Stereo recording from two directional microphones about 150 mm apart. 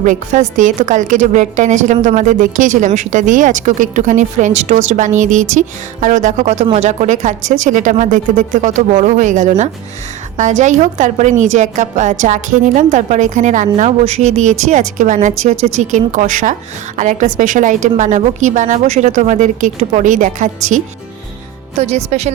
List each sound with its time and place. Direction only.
0.0 s a woman's voice: 60° right (ahead or behind)
21.8 s speech: 45° right (ahead or behind)